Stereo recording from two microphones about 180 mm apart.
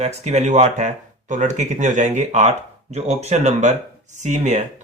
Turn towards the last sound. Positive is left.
turn(degrees=-40)  # may be behind; listen again after turning